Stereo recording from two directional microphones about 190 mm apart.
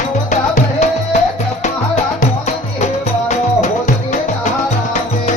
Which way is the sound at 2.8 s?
40° left (ahead or behind).